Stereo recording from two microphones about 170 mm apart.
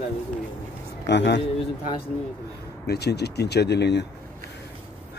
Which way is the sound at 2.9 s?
75° left (ahead or behind).